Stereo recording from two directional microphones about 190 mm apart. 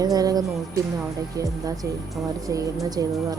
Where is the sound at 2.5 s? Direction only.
15° right (ahead or behind).